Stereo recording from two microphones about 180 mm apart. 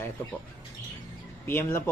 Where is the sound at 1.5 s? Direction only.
15° left (ahead or behind).